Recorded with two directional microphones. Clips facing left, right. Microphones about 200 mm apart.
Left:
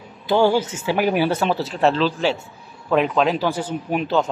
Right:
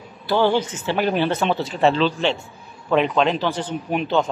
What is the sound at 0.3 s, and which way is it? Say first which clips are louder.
Speech: left 2 dB; 10° left (ahead or behind).